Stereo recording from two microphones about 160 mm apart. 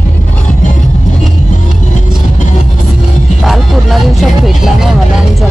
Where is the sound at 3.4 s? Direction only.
Centre (ahead or behind).